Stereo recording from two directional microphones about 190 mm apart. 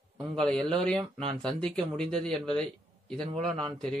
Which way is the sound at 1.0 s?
25° right (ahead or behind).